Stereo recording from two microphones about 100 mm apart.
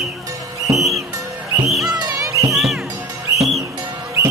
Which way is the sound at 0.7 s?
Centre (ahead or behind).